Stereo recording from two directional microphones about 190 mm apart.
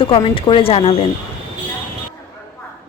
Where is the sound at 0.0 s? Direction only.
25° left (ahead or behind).